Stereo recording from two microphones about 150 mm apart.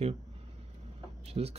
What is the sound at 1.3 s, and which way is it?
Speech, 40° right (ahead or behind).